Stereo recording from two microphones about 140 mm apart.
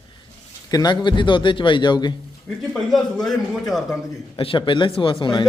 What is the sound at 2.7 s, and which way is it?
A man's voice, 5° left (ahead or behind).